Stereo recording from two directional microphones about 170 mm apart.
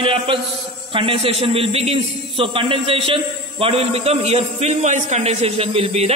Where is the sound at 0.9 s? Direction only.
35° right (ahead or behind).